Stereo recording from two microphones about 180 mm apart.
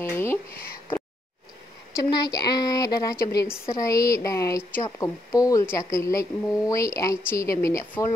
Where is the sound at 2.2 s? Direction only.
20° left (ahead or behind).